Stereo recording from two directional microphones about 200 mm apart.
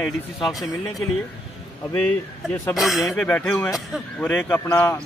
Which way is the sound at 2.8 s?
Centre (ahead or behind).